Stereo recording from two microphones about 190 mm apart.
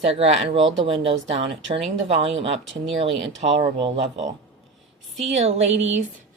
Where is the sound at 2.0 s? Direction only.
30° right (ahead or behind).